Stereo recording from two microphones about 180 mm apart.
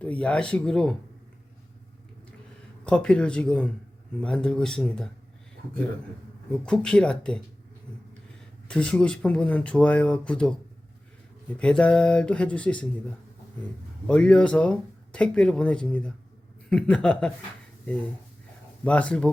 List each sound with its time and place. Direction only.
0.0 s speech: 5° left (ahead or behind)
2.8 s speech: 5° left (ahead or behind)
6.5 s speech: 5° left (ahead or behind)
8.6 s speech: 5° left (ahead or behind)
14.1 s speech: 5° left (ahead or behind)
18.9 s speech: 5° left (ahead or behind)